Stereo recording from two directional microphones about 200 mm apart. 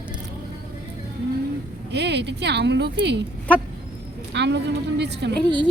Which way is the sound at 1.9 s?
60° right (ahead or behind).